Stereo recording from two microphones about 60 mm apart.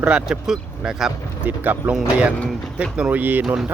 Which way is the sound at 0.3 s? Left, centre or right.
Centre.